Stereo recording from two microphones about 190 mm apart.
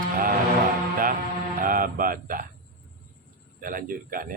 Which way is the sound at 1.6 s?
50° right (ahead or behind).